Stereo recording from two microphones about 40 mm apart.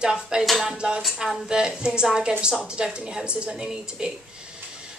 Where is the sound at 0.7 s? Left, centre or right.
Right.